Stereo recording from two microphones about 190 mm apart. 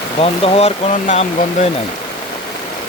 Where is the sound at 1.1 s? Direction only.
35° left (ahead or behind).